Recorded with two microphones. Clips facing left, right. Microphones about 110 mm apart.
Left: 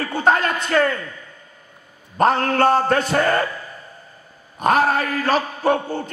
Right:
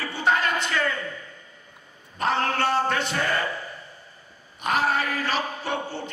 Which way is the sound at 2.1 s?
45° left (ahead or behind).